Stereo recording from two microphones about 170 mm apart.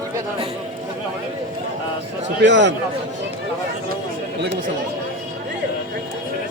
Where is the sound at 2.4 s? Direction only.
90° right.